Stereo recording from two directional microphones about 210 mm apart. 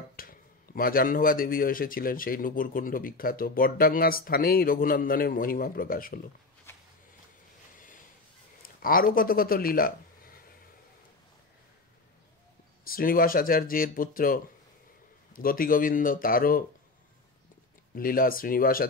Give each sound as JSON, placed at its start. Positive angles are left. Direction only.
{"t": 0.1, "sound": "a man's voice", "side_deg": 45}
{"t": 8.6, "sound": "speech", "side_deg": 45}
{"t": 12.8, "sound": "a man's voice", "side_deg": 45}
{"t": 17.9, "sound": "a man's voice", "side_deg": 45}